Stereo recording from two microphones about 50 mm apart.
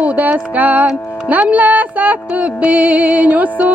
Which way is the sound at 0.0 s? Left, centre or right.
Right.